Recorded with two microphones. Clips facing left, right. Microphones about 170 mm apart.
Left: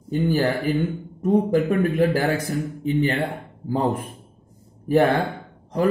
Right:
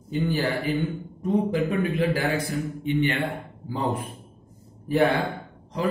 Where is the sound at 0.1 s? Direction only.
40° left (ahead or behind).